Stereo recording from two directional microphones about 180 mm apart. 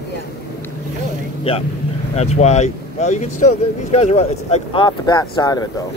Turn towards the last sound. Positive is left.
turn(degrees=20)  # may be behind; listen again after turning